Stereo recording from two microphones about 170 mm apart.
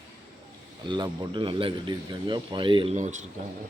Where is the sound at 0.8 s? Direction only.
25° right (ahead or behind).